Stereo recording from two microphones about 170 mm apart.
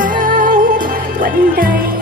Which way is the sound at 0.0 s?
55° right (ahead or behind).